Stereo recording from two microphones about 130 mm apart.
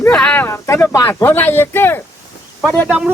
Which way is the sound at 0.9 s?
15° left (ahead or behind).